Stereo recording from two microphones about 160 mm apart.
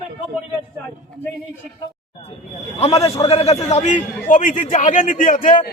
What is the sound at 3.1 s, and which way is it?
A man's voice, 40° left (ahead or behind).